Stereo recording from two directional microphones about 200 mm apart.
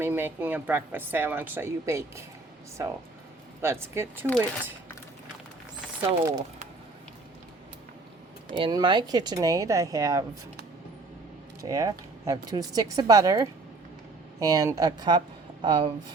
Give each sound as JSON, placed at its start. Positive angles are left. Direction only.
{"t": 0.0, "sound": "a woman's voice", "side_deg": -10}
{"t": 6.0, "sound": "a woman's voice", "side_deg": -20}
{"t": 8.5, "sound": "a woman's voice", "side_deg": -25}
{"t": 11.6, "sound": "a woman's voice", "side_deg": -15}